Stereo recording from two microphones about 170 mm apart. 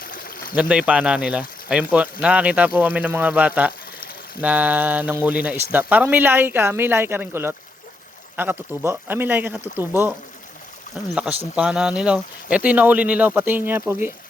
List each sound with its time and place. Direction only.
0.0 s a sound: 55° left (ahead or behind)
0.5 s speech: 5° right (ahead or behind)
11.1 s speech: 5° right (ahead or behind)